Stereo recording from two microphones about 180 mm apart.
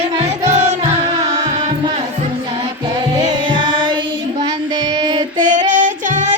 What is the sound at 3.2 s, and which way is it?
Music, 25° right (ahead or behind).